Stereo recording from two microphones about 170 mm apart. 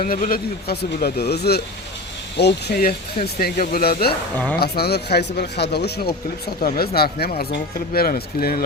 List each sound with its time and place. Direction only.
0.0 s speech: 55° left (ahead or behind); by 1.6 s 70° left (ahead or behind)
2.3 s speech: 80° left; by 8.6 s 60° left (ahead or behind)